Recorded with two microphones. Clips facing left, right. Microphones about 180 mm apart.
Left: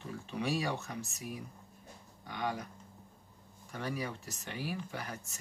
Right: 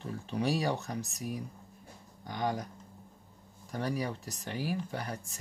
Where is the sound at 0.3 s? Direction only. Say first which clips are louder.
Right 4 dB; 40° right (ahead or behind).